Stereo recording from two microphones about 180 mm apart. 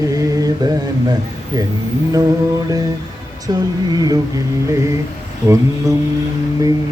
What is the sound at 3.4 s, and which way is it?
Speech, 20° right (ahead or behind).